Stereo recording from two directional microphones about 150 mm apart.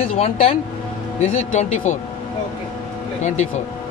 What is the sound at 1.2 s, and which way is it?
Speech, 50° left (ahead or behind).